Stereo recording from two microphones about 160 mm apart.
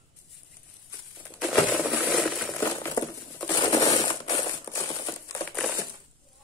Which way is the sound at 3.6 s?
25° left (ahead or behind).